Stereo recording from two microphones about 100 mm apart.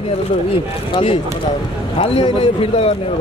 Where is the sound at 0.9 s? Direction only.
70° left (ahead or behind).